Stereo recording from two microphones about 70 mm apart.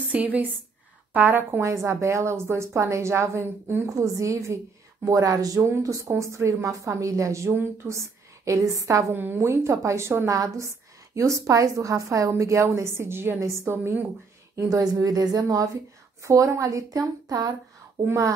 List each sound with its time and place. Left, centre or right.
0.0 s a woman's voice: right
1.6 s a woman's voice: right
3.9 s a woman's voice: right
7.5 s a woman's voice: right
9.1 s a woman's voice: right
10.3 s a woman's voice: right
14.5 s a woman's voice: right
18.0 s a woman's voice: right